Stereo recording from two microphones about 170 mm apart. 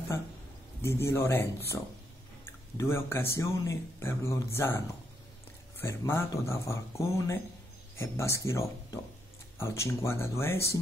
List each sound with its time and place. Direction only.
0.8 s speech: 15° left (ahead or behind)
2.8 s speech: 15° left (ahead or behind)